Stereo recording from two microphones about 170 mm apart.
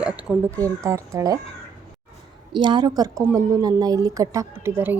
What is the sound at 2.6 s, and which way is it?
A woman's voice, 25° right (ahead or behind).